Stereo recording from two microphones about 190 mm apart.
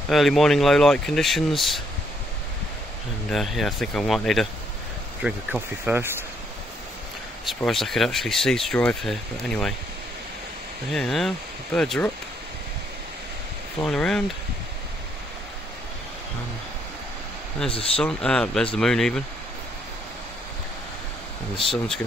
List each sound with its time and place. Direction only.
0.1 s speech: centre (ahead or behind)
3.3 s speech: centre (ahead or behind)
7.4 s speech: centre (ahead or behind)
10.9 s speech: centre (ahead or behind)
13.8 s speech: 5° left (ahead or behind)
17.6 s speech: 30° left (ahead or behind)
18.0 s speech: 5° left (ahead or behind)